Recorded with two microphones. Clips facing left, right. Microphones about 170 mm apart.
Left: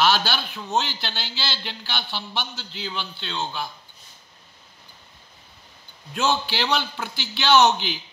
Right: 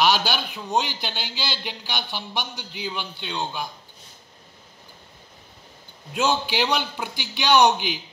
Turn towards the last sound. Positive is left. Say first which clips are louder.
# even
turn(degrees=-15)  # may be behind; listen again after turning